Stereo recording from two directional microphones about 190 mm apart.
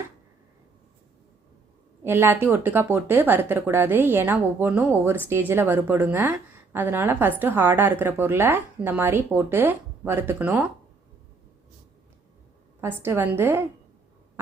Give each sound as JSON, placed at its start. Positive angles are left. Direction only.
{"t": 2.0, "sound": "speech", "side_deg": -10}
{"t": 12.8, "sound": "speech", "side_deg": -15}